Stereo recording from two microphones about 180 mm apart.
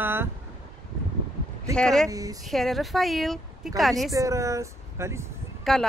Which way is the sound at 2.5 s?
Centre (ahead or behind).